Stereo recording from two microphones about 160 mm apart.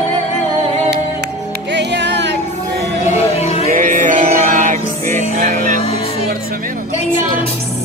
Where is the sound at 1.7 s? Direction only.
90° right.